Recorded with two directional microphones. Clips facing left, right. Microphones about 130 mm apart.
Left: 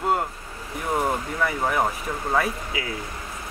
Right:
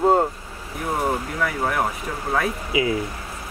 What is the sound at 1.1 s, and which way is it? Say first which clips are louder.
Speech: right 1 dB; centre (ahead or behind).